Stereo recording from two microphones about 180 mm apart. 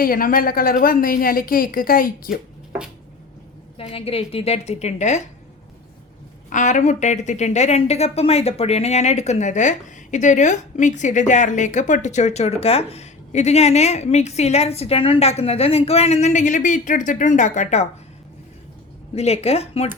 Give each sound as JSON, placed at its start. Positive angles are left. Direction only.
{"t": 0.0, "sound": "a woman's voice", "side_deg": 55}
{"t": 3.8, "sound": "a woman's voice", "side_deg": 30}
{"t": 6.5, "sound": "a woman's voice", "side_deg": 45}
{"t": 19.1, "sound": "a woman's voice", "side_deg": 35}